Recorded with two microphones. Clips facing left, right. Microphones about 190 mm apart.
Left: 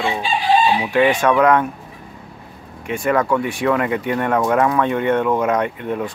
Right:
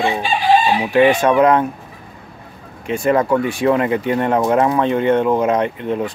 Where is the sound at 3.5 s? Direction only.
30° right (ahead or behind).